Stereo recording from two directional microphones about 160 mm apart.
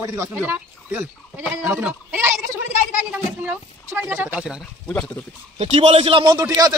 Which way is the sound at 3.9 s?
10° right (ahead or behind).